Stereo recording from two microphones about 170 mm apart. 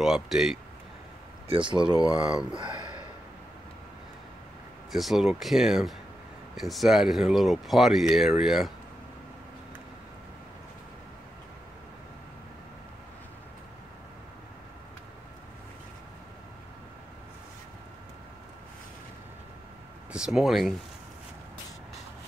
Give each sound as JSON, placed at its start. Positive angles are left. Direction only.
{"t": 0.0, "sound": "speech", "side_deg": 0}
{"t": 1.5, "sound": "speech", "side_deg": -30}
{"t": 2.0, "sound": "speech", "side_deg": -5}
{"t": 2.5, "sound": "a sound", "side_deg": -25}
{"t": 4.9, "sound": "speech", "side_deg": 0}
{"t": 20.1, "sound": "speech", "side_deg": -5}